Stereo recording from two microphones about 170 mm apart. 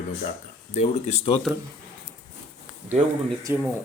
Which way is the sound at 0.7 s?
40° left (ahead or behind).